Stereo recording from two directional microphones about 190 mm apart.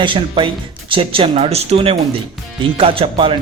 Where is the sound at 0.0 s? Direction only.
25° right (ahead or behind).